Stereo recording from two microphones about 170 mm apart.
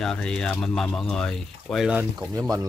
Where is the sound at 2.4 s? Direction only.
15° right (ahead or behind).